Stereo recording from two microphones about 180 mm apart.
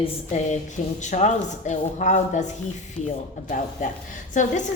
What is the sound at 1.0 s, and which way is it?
Chopping, 40° left (ahead or behind).